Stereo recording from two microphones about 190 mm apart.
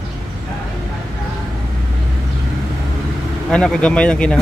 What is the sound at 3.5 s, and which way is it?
Speech, 5° left (ahead or behind).